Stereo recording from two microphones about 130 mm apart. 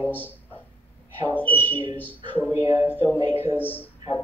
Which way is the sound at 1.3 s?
15° left (ahead or behind).